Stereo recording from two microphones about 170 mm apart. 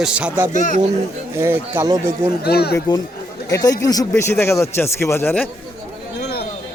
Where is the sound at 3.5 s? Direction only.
20° left (ahead or behind).